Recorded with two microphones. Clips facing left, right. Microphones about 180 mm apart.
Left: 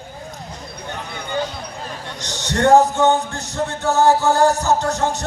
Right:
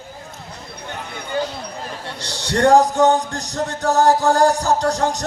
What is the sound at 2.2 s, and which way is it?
Music, 35° right (ahead or behind).